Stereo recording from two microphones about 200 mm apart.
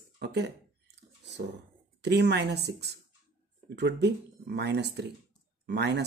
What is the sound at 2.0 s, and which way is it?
Speech, 55° right (ahead or behind).